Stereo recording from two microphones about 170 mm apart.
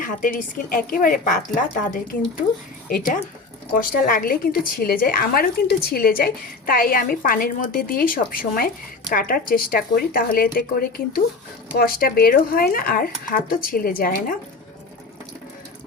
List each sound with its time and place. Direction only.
0.0 s a woman's voice: 55° left (ahead or behind)